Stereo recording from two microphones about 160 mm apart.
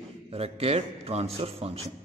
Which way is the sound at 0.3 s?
40° right (ahead or behind).